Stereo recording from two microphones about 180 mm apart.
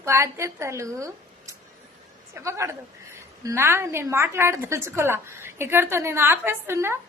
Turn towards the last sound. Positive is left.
turn(degrees=-15)  # may be behind; listen again after turning